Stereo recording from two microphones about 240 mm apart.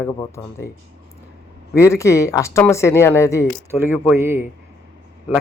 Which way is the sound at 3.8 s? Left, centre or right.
Centre.